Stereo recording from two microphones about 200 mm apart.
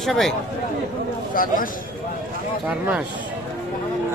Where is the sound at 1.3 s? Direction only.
45° left (ahead or behind).